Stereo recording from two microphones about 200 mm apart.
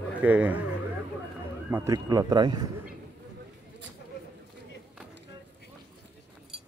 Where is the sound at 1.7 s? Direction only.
15° right (ahead or behind).